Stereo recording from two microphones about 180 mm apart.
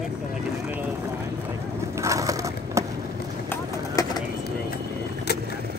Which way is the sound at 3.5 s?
20° left (ahead or behind).